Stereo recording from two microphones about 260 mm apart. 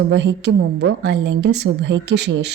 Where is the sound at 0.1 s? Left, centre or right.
Right.